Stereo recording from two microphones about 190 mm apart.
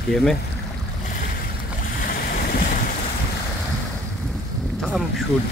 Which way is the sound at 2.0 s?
50° left (ahead or behind).